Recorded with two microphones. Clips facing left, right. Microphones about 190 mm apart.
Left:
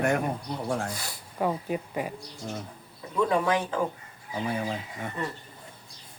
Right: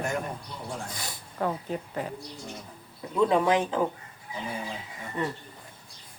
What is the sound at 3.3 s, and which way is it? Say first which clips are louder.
Speech: right 2 dB; 20° right (ahead or behind).